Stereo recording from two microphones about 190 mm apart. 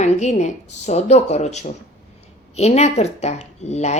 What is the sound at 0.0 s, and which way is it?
Speech, 35° left (ahead or behind).